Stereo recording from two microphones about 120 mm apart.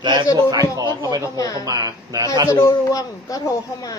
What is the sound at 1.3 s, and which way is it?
Speech, 30° left (ahead or behind).